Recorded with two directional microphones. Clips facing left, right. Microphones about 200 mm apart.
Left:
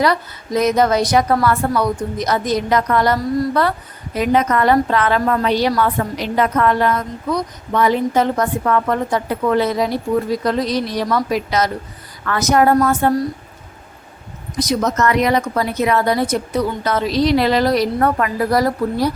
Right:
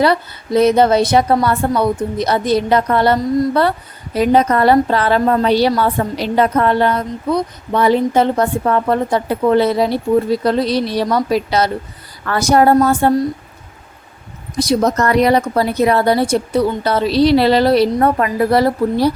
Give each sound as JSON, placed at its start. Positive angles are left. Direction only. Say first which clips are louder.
{"t": 0.0, "sound": "a woman's voice", "louder": "right 3 dB", "side_deg": -30}
{"t": 14.6, "sound": "a woman's voice", "louder": "right 3 dB", "side_deg": -30}